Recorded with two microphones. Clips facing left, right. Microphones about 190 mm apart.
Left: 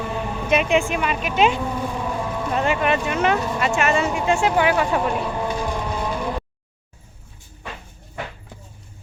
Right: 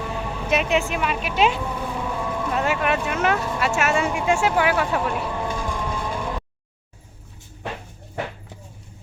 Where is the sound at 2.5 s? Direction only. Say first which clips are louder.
Left 2 dB; 5° right (ahead or behind).